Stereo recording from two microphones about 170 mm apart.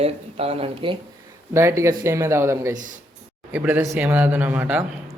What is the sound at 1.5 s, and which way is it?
Speech, 15° right (ahead or behind).